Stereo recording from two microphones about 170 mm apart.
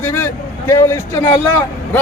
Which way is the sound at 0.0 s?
15° left (ahead or behind).